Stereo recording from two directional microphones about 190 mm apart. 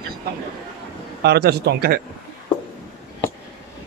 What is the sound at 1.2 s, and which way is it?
Speech, 60° right (ahead or behind).